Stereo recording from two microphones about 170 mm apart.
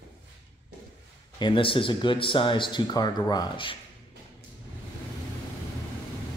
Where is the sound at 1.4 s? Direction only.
30° left (ahead or behind).